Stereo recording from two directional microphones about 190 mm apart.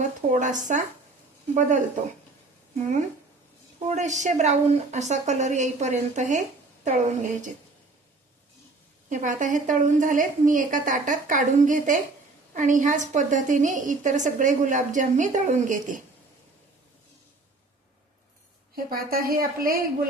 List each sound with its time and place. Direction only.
0.0 s a woman's voice: 40° right (ahead or behind)
3.8 s a woman's voice: 40° right (ahead or behind)
9.0 s a woman's voice: 40° right (ahead or behind)
18.9 s a woman's voice: 50° right (ahead or behind)